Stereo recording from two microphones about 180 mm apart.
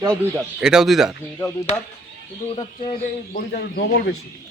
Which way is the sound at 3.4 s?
50° left (ahead or behind).